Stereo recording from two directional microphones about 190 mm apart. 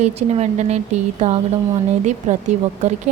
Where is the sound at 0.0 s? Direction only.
35° right (ahead or behind).